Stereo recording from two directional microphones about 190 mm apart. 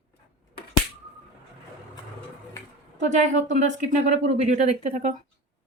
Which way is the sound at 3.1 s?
40° right (ahead or behind).